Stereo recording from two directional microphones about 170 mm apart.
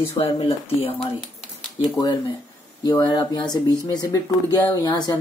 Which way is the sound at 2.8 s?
20° left (ahead or behind).